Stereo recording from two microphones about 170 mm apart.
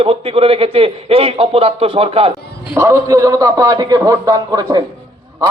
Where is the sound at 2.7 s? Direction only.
15° right (ahead or behind).